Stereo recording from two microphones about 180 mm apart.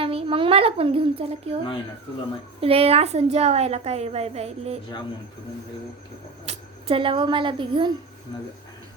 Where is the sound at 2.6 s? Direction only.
30° right (ahead or behind).